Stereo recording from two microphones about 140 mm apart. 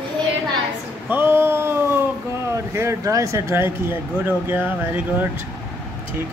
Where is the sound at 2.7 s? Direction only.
20° right (ahead or behind).